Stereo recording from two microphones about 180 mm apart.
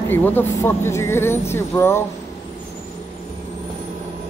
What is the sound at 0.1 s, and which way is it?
Speech, 10° left (ahead or behind).